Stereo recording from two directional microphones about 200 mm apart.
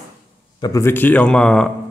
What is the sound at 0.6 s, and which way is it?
Speech, 15° left (ahead or behind).